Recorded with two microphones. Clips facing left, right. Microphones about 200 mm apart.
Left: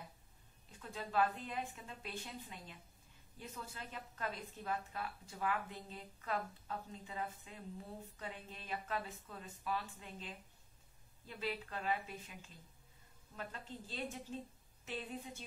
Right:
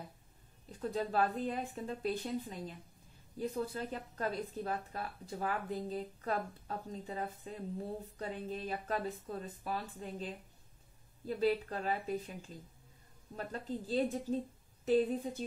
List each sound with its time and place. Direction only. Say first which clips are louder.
0.7 s a woman's voice: right 11 dB; 35° right (ahead or behind)